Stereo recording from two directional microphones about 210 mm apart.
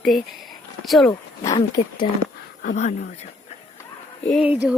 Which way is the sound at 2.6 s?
40° left (ahead or behind).